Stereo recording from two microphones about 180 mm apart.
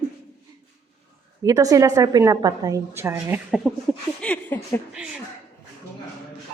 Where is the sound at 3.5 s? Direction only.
Centre (ahead or behind).